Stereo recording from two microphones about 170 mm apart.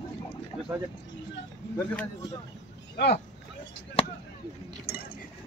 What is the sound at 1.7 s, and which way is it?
Speech, 10° left (ahead or behind).